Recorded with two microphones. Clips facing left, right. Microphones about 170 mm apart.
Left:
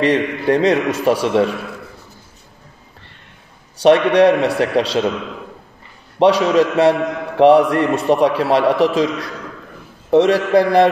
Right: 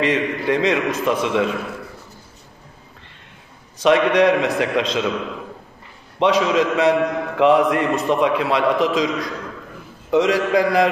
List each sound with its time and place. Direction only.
0.0 s a man's voice: 35° left (ahead or behind)
3.8 s a man's voice: 30° left (ahead or behind)
6.1 s a man's voice: 35° left (ahead or behind)